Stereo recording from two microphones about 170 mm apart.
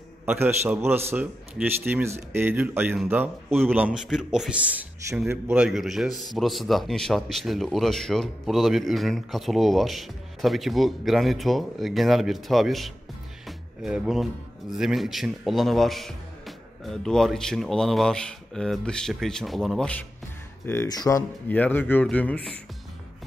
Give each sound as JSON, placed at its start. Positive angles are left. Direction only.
{"t": 0.2, "sound": "a man's voice", "side_deg": -15}
{"t": 21.5, "sound": "speech", "side_deg": 10}